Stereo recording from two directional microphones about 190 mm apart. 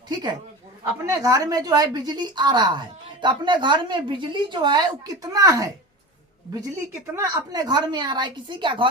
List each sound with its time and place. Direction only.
0.1 s a woman's voice: 20° right (ahead or behind)
7.2 s speech: 20° right (ahead or behind)